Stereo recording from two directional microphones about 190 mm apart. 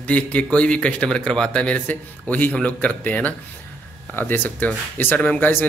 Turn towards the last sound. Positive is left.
turn(degrees=10)  # may be behind; listen again after turning